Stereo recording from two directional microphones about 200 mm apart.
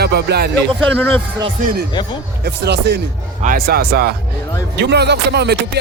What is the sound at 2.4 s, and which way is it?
Speech, 55° right (ahead or behind).